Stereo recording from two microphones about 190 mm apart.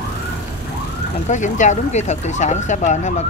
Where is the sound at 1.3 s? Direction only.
40° left (ahead or behind).